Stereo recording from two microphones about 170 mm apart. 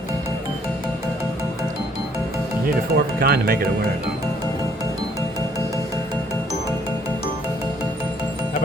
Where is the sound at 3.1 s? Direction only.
65° right (ahead or behind).